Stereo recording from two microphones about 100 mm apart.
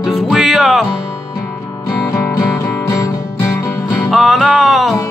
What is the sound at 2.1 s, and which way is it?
Music, 30° left (ahead or behind).